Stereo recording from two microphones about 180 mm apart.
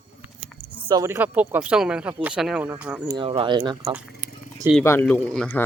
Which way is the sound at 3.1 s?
30° right (ahead or behind).